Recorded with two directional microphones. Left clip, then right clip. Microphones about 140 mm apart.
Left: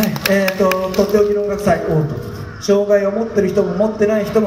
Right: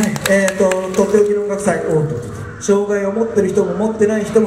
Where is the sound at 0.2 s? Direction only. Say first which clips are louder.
Right 2 dB; 45° left (ahead or behind).